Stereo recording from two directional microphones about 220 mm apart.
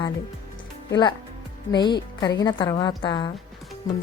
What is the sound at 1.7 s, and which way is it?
A woman's voice, 20° left (ahead or behind).